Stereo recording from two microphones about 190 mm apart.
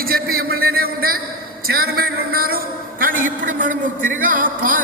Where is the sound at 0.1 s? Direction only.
50° right (ahead or behind).